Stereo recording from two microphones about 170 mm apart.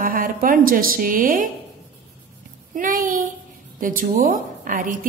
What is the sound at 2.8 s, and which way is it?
A woman's voice, 50° right (ahead or behind).